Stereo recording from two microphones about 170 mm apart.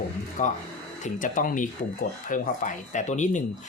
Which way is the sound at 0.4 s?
45° left (ahead or behind).